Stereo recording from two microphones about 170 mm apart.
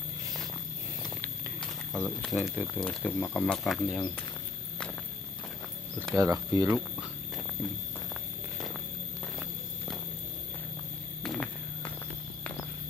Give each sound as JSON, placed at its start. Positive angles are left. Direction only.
{"t": 1.9, "sound": "speech", "side_deg": 5}
{"t": 6.1, "sound": "speech", "side_deg": -20}
{"t": 11.2, "sound": "vehicle", "side_deg": 5}